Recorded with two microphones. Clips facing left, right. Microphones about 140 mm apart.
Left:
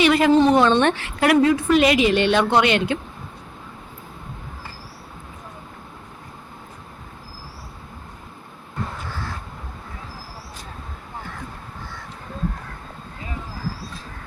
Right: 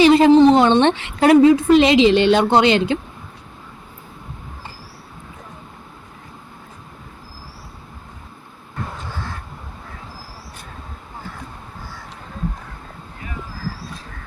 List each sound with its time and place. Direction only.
0.0 s a woman's voice: 25° right (ahead or behind)